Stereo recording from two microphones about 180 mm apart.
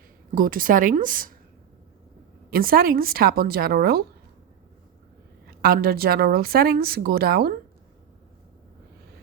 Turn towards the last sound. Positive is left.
turn(degrees=-55)  # may be behind; listen again after turning